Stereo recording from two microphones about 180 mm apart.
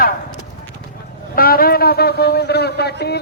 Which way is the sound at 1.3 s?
55° left (ahead or behind).